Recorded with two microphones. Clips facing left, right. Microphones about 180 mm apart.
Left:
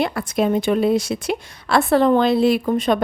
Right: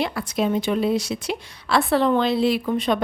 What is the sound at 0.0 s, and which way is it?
A woman's voice, 50° left (ahead or behind).